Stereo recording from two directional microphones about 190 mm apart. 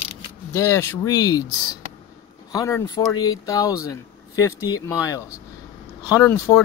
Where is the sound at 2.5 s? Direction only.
15° left (ahead or behind).